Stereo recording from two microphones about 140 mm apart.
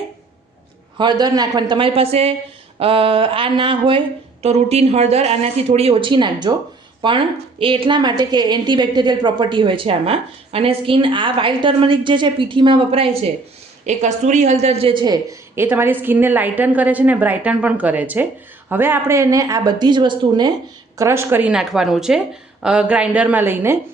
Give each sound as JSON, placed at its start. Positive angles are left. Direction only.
{"t": 0.9, "sound": "a woman's voice", "side_deg": -30}
{"t": 4.4, "sound": "a woman's voice", "side_deg": -50}
{"t": 13.8, "sound": "speech", "side_deg": -60}
{"t": 15.5, "sound": "a woman's voice", "side_deg": -15}
{"t": 21.0, "sound": "a woman's voice", "side_deg": -20}